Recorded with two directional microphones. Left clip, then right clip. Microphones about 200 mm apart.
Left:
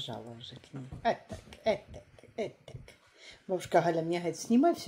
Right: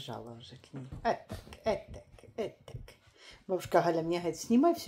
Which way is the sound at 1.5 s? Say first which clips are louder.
Left 2 dB; 10° left (ahead or behind).